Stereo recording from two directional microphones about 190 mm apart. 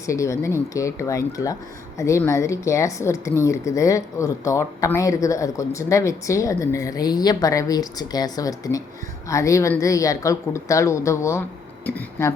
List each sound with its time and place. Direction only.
0.0 s speech: 15° left (ahead or behind)